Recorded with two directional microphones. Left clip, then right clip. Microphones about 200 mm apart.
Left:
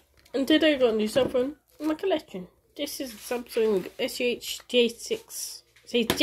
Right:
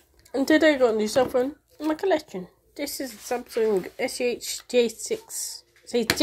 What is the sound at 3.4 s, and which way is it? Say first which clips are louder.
Speech: right 1 dB; 15° left (ahead or behind).